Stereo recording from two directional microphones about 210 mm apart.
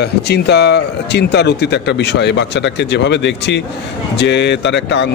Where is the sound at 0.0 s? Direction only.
50° left (ahead or behind).